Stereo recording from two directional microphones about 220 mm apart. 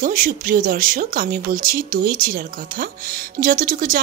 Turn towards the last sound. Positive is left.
turn(degrees=-40)  # may be behind; listen again after turning